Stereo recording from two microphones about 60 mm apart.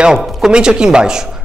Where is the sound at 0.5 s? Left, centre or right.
Centre.